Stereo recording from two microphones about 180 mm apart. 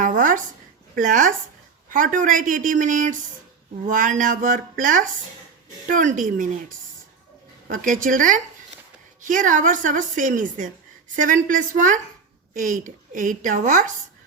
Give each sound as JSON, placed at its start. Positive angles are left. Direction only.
{"t": 0.0, "sound": "a sound", "side_deg": -45}
{"t": 0.9, "sound": "a woman's voice", "side_deg": -45}
{"t": 7.7, "sound": "a woman's voice", "side_deg": -45}